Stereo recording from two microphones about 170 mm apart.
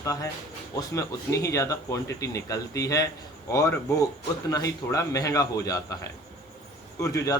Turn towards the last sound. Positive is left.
turn(degrees=20)  # may be behind; listen again after turning